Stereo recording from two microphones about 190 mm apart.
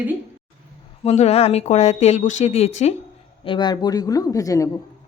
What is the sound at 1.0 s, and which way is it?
Speech, 35° left (ahead or behind).